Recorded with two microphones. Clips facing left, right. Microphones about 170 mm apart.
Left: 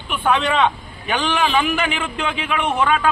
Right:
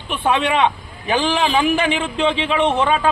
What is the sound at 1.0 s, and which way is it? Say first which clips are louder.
A man's voice: right 2 dB; 30° right (ahead or behind).